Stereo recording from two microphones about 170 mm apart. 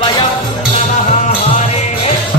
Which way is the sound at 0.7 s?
40° left (ahead or behind).